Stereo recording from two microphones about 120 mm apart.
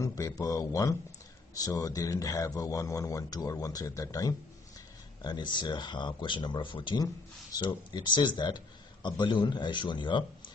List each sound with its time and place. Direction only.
0.0 s a man's voice: 25° left (ahead or behind)